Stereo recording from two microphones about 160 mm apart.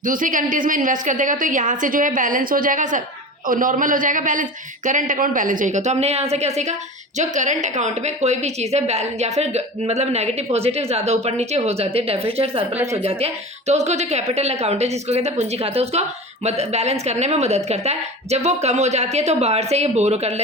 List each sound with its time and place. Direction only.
0.0 s a woman's voice: 55° right (ahead or behind)